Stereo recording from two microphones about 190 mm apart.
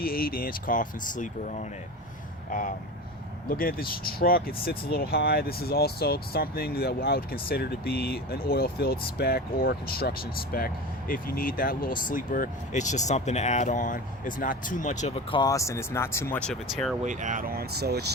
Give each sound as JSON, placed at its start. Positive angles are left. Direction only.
{"t": 0.0, "sound": "speech", "side_deg": 50}
{"t": 17.0, "sound": "speech", "side_deg": -40}